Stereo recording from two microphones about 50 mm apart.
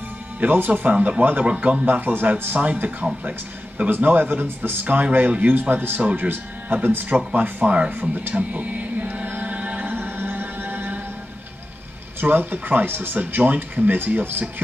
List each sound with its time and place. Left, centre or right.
0.4 s speech: right
0.9 s speech: right
1.9 s speech: right
3.9 s speech: right
4.8 s speech: right
9.1 s a capella: right
9.8 s music: right
12.2 s speech: right
13.2 s speech: right